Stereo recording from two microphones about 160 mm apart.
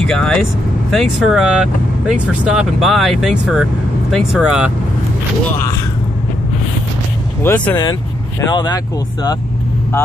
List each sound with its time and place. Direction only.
0.0 s speech: 5° left (ahead or behind)
7.4 s speech: 10° left (ahead or behind)
8.4 s speech: 25° left (ahead or behind)